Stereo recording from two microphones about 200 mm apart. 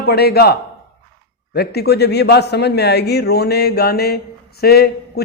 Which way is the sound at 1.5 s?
55° left (ahead or behind).